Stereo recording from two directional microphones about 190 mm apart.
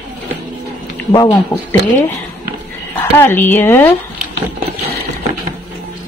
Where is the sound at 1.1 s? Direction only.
20° left (ahead or behind).